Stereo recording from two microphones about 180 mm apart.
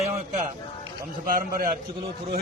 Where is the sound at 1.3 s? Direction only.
50° right (ahead or behind).